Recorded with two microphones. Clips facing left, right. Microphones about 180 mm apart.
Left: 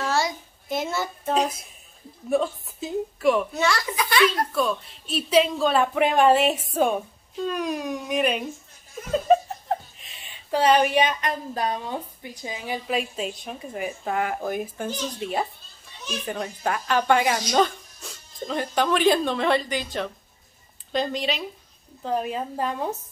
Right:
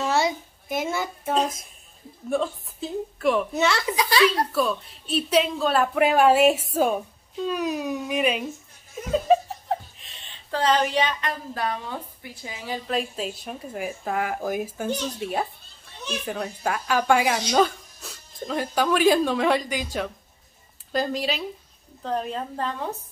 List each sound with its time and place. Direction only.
0.0 s a sound: 20° right (ahead or behind)
0.7 s speech: 10° right (ahead or behind)
1.3 s a woman's voice: 5° left (ahead or behind)
3.5 s a child's voice: 25° right (ahead or behind)
4.5 s speech: centre (ahead or behind)
9.1 s laughter: centre (ahead or behind)
10.5 s a woman's voice: 15° left (ahead or behind)
12.9 s a woman's voice: centre (ahead or behind)